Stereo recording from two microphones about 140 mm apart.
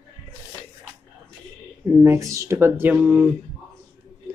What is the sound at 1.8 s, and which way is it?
Speech, 15° right (ahead or behind).